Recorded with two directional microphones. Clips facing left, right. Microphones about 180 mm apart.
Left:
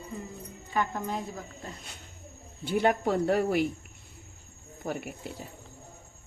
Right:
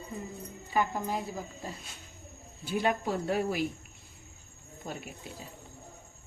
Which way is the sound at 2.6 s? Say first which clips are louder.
Left 4 dB; 65° left (ahead or behind).